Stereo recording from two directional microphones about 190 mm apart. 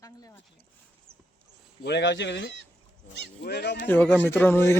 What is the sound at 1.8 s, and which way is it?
Speech, 65° left (ahead or behind).